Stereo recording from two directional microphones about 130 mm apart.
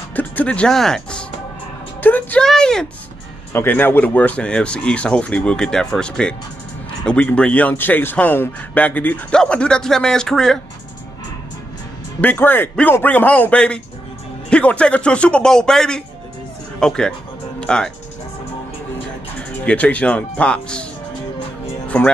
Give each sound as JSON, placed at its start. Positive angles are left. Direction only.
{"t": 0.1, "sound": "speech", "side_deg": 10}
{"t": 2.0, "sound": "music", "side_deg": 15}
{"t": 2.4, "sound": "a sound", "side_deg": 5}
{"t": 3.5, "sound": "speech", "side_deg": 15}
{"t": 12.2, "sound": "speech", "side_deg": 15}
{"t": 19.6, "sound": "speech", "side_deg": 10}
{"t": 21.8, "sound": "speech", "side_deg": 10}